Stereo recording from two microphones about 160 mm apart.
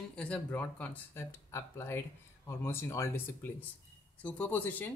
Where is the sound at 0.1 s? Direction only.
10° left (ahead or behind).